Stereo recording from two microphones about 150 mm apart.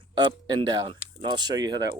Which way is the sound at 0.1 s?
30° right (ahead or behind).